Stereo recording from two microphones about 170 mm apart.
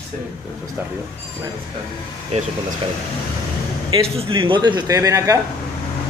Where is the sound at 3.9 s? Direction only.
30° right (ahead or behind).